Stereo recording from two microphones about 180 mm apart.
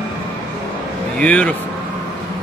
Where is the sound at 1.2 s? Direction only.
10° left (ahead or behind).